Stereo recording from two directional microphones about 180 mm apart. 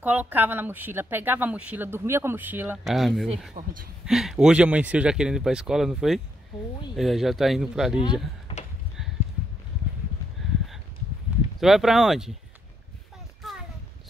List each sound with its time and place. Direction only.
0.0 s speech: 10° right (ahead or behind)
3.6 s speech: 45° right (ahead or behind)
4.0 s speech: centre (ahead or behind)
8.5 s a sound: 30° left (ahead or behind)
11.6 s speech: centre (ahead or behind)